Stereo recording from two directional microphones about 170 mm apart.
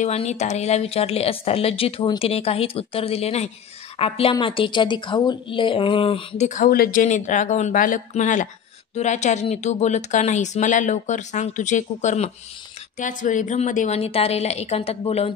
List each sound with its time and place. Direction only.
0.0 s a woman's voice: 40° left (ahead or behind)
6.7 s speech: 55° left (ahead or behind); by 15.3 s 35° left (ahead or behind)